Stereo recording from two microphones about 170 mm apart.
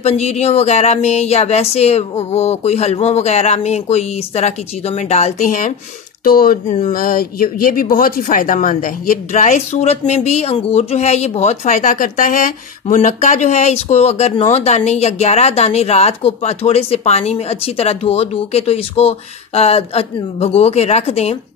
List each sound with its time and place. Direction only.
0.0 s speech: 40° left (ahead or behind)